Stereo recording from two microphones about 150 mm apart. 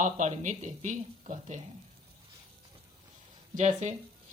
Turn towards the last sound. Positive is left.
turn(degrees=-50)  # may be behind; listen again after turning